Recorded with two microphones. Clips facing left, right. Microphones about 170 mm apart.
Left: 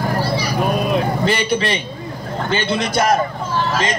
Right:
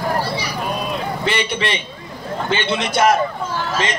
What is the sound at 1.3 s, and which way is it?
A man's voice, 40° left (ahead or behind).